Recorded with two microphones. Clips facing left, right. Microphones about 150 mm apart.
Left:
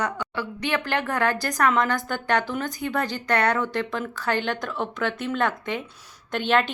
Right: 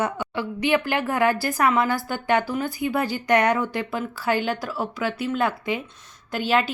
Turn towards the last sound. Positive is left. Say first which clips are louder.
# even
turn(degrees=-5)  # may be behind; listen again after turning